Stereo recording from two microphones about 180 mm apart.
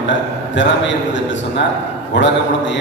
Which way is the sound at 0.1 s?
90° left.